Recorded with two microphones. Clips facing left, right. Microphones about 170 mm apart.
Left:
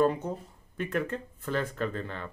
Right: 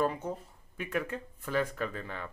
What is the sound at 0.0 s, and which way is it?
Speech, 5° right (ahead or behind).